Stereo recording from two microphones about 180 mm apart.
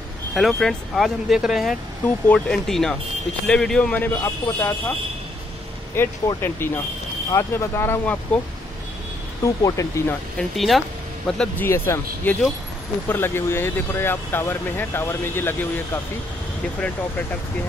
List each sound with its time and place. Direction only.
0.3 s speech: centre (ahead or behind)
5.9 s speech: 15° left (ahead or behind)
9.4 s speech: 20° left (ahead or behind)
10.5 s speech: centre (ahead or behind)